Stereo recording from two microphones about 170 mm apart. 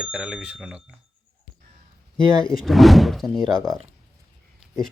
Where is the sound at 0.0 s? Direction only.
5° right (ahead or behind).